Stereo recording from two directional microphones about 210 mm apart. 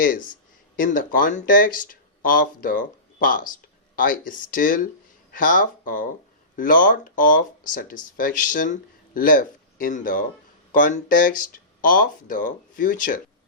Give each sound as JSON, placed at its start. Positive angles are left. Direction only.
{"t": 0.8, "sound": "speech", "side_deg": 40}